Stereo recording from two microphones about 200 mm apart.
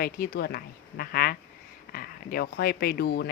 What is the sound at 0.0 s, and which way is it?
Speech, 50° left (ahead or behind).